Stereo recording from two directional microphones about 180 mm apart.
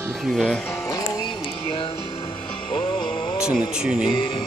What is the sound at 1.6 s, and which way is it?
Music, 30° left (ahead or behind).